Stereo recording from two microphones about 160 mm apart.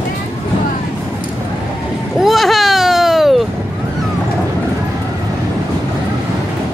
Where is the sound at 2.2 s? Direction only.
Centre (ahead or behind).